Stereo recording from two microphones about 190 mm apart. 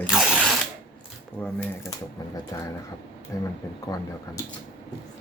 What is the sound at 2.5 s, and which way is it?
Speech, 15° left (ahead or behind).